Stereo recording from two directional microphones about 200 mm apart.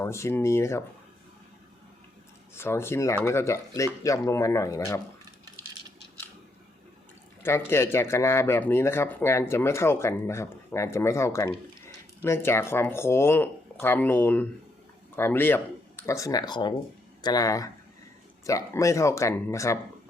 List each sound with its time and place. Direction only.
0.0 s speech: 15° left (ahead or behind)
2.6 s speech: 10° left (ahead or behind)
7.4 s speech: 10° left (ahead or behind)